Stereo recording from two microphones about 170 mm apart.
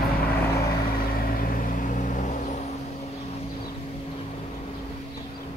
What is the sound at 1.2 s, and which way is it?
Vehicle, 55° left (ahead or behind).